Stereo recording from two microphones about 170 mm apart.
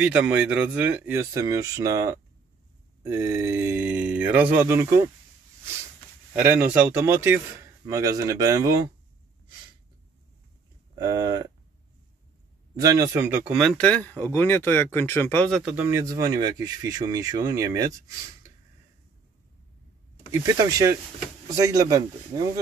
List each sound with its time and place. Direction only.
0.0 s a man's voice: 5° right (ahead or behind)
6.3 s a man's voice: 10° right (ahead or behind)
11.0 s speech: 20° right (ahead or behind)
12.7 s speech: 20° right (ahead or behind); by 15.6 s 10° left (ahead or behind)
15.6 s speech: 10° right (ahead or behind)
20.4 s speech: 20° right (ahead or behind)